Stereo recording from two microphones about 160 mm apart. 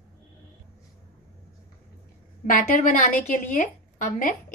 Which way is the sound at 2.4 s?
65° left (ahead or behind).